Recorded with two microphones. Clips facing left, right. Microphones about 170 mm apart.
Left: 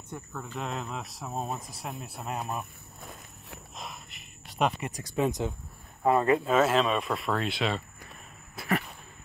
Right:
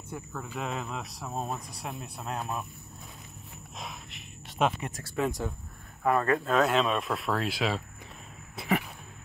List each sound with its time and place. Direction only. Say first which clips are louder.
0.1 s speech: right 1 dB; centre (ahead or behind)
3.7 s a sound: right 2 dB; centre (ahead or behind)
4.9 s speech: left 2 dB; 20° left (ahead or behind)
6.4 s speech: left 1 dB; centre (ahead or behind)